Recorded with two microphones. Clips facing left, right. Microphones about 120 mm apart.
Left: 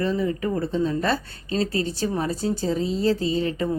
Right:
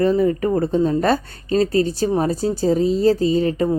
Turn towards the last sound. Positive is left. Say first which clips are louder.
# right 6 dB
turn(degrees=-35)  # may be behind; listen again after turning